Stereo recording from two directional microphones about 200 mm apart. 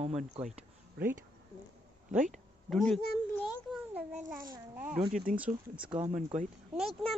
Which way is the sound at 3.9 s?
5° right (ahead or behind).